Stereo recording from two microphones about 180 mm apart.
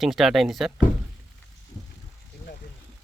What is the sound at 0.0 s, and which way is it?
Speech, centre (ahead or behind).